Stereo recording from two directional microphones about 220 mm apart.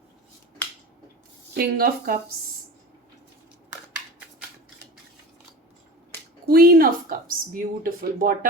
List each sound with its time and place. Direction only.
1.5 s speech: 45° right (ahead or behind)
6.5 s speech: 45° right (ahead or behind)